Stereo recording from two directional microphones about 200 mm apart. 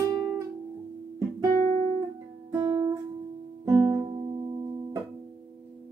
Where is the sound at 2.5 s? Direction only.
20° right (ahead or behind).